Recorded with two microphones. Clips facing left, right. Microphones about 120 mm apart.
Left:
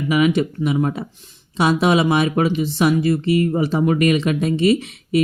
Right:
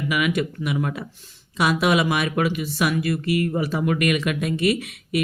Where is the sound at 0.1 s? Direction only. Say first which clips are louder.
Left 7 dB; 30° left (ahead or behind).